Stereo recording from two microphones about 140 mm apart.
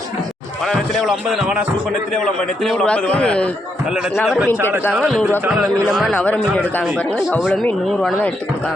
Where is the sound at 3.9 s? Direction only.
5° right (ahead or behind).